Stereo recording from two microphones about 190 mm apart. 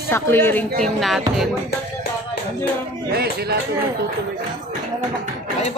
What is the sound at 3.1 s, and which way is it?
Speech, 55° right (ahead or behind).